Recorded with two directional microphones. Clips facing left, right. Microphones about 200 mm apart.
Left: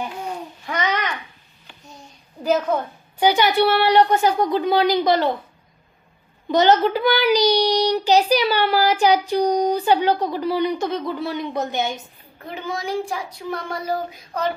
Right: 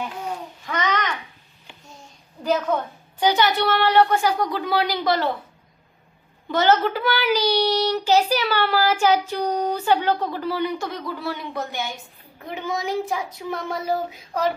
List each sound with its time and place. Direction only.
0.7 s babbling: 10° left (ahead or behind)
2.4 s speech: 10° left (ahead or behind)
6.5 s speech: 15° left (ahead or behind)
12.4 s a child's voice: 15° right (ahead or behind)
13.8 s a child's voice: 10° right (ahead or behind)